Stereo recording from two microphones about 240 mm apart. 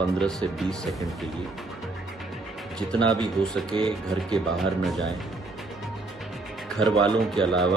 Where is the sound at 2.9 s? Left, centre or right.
Centre.